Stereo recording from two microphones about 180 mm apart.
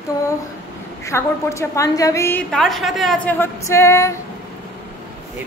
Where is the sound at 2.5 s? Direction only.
Centre (ahead or behind).